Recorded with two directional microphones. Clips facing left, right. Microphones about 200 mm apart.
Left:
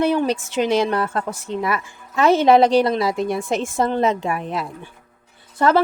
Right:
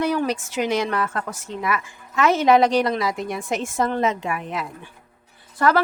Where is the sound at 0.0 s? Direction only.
25° left (ahead or behind).